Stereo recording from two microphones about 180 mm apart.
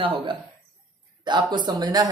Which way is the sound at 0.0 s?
25° right (ahead or behind).